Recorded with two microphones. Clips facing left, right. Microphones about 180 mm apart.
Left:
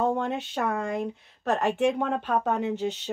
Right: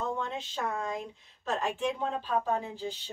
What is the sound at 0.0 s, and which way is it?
Speech, 65° left (ahead or behind).